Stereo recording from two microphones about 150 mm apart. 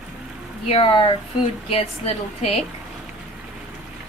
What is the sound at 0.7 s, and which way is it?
A woman's voice, 35° left (ahead or behind).